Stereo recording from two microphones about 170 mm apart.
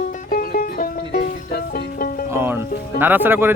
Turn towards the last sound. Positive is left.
turn(degrees=-10)  # may be behind; listen again after turning